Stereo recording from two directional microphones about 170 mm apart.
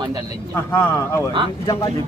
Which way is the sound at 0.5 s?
15° left (ahead or behind).